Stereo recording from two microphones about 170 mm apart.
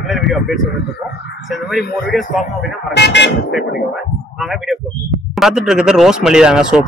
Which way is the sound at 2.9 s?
85° left.